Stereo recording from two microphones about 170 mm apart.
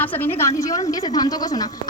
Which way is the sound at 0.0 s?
10° left (ahead or behind).